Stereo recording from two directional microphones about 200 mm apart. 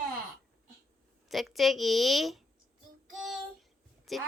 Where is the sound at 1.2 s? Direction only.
Centre (ahead or behind).